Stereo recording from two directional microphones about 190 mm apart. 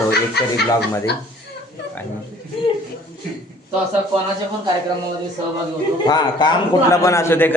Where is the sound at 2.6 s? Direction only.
30° left (ahead or behind).